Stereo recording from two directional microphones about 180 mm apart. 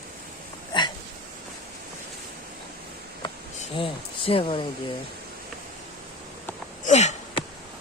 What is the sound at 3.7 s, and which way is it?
Speech, 30° left (ahead or behind).